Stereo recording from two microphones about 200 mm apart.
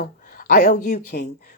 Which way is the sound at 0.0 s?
40° left (ahead or behind).